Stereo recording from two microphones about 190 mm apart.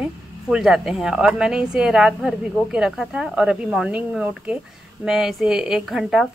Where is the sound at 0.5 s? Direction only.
Centre (ahead or behind).